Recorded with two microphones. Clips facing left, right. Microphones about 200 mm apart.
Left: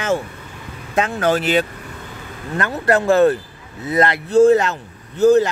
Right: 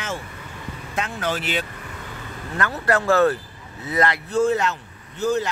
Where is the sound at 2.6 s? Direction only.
20° left (ahead or behind); by 5.5 s 45° left (ahead or behind).